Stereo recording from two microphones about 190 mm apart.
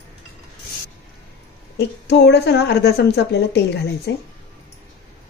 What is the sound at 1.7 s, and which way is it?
A woman's voice, 60° left (ahead or behind).